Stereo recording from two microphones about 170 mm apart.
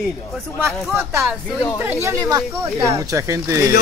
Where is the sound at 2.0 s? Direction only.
20° right (ahead or behind).